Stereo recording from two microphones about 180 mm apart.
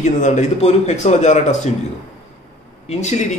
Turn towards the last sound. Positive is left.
turn(degrees=40)  # may be behind; listen again after turning